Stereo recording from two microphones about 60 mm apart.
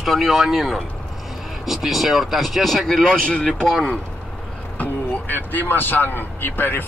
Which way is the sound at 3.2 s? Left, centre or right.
Centre.